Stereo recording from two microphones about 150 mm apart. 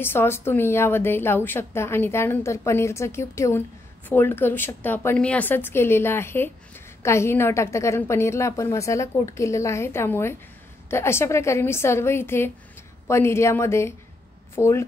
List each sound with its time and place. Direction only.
0.0 s a woman's voice: 15° left (ahead or behind)